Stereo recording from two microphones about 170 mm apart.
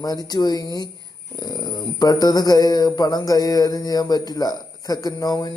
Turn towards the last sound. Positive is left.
turn(degrees=25)  # may be behind; listen again after turning